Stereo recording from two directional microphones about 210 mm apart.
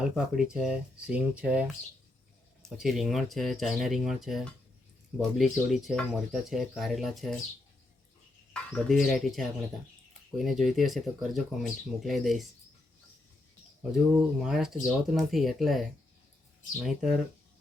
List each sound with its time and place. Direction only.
0.2 s speech: 5° right (ahead or behind)
2.6 s speech: centre (ahead or behind)
8.7 s speech: centre (ahead or behind)
14.1 s speech: 5° right (ahead or behind)